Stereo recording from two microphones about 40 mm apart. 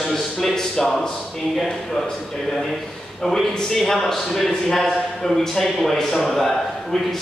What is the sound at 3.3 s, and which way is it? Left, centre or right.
A man's voice, centre.